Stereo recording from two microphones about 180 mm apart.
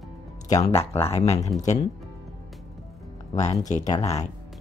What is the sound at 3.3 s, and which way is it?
Speech, 40° left (ahead or behind).